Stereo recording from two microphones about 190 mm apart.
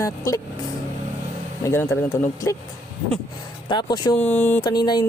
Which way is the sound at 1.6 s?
15° left (ahead or behind).